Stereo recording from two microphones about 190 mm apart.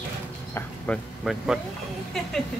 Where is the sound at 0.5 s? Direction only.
Centre (ahead or behind).